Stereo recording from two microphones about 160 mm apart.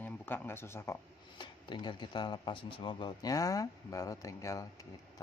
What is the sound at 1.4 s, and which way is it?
Speech, 30° left (ahead or behind).